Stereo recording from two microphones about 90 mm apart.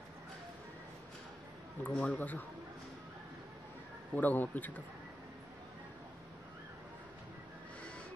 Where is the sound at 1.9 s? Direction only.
15° left (ahead or behind).